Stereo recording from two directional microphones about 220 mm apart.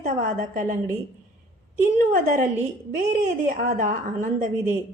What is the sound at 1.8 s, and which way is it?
A woman's voice, 35° right (ahead or behind).